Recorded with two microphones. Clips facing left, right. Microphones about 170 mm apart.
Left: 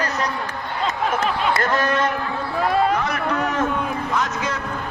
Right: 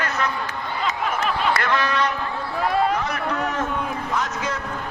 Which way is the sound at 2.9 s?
70° left (ahead or behind).